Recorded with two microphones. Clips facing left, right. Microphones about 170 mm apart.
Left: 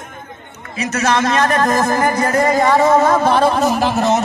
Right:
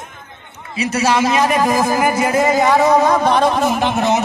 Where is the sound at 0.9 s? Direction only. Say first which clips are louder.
Right 1 dB; 10° right (ahead or behind).